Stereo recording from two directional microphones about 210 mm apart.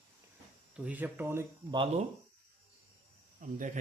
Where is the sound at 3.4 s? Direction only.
40° right (ahead or behind).